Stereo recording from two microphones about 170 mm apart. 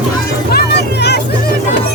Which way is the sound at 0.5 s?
75° left (ahead or behind).